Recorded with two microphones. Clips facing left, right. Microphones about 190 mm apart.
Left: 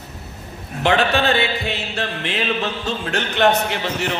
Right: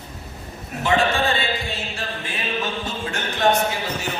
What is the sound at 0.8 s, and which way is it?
Music, 70° left (ahead or behind).